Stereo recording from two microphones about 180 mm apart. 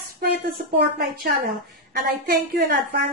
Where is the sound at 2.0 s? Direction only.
55° right (ahead or behind).